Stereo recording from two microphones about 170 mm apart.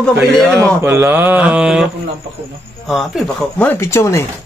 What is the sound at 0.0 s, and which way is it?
Speech, centre (ahead or behind).